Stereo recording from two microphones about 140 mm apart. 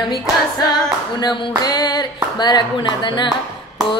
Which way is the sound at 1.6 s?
30° left (ahead or behind).